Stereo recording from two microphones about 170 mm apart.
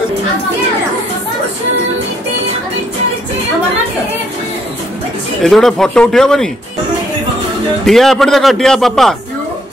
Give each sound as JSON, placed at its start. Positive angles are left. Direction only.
{"t": 5.4, "sound": "a man's voice", "side_deg": 0}
{"t": 7.8, "sound": "a man's voice", "side_deg": 0}